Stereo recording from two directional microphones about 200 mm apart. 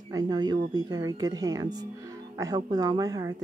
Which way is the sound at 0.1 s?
20° right (ahead or behind).